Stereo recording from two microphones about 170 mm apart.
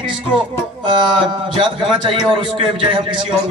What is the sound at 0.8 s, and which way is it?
A man's voice, 30° right (ahead or behind).